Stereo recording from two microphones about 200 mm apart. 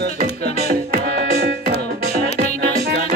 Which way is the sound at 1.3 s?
50° right (ahead or behind).